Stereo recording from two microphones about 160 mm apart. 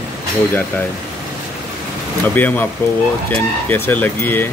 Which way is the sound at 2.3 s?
10° left (ahead or behind).